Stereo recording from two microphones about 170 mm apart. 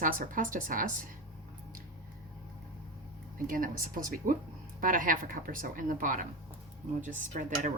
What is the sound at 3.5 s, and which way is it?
Speech, 55° right (ahead or behind).